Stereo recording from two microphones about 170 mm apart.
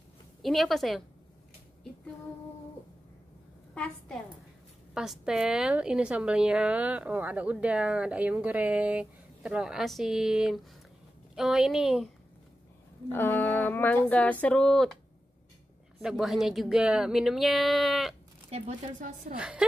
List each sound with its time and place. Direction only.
0.4 s a woman's voice: centre (ahead or behind)
3.7 s a woman's voice: 5° left (ahead or behind)
4.9 s a woman's voice: 5° right (ahead or behind)
13.1 s speech: 10° left (ahead or behind)
16.0 s a woman's voice: 5° right (ahead or behind)
18.5 s speech: 45° right (ahead or behind)
19.3 s a woman's voice: 5° right (ahead or behind)